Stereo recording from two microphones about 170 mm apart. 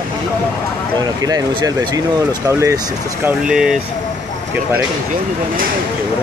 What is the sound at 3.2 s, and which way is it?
Speech, 5° right (ahead or behind).